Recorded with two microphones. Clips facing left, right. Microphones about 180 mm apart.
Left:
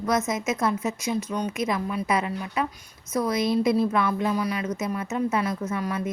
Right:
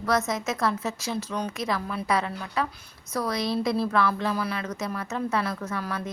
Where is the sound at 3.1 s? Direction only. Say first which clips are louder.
Left 4 dB; 20° left (ahead or behind).